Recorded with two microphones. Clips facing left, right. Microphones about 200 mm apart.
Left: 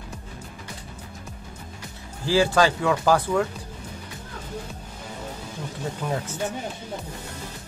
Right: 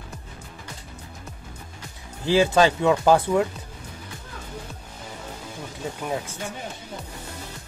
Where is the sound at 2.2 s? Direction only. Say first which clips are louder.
Right 2 dB; 20° right (ahead or behind).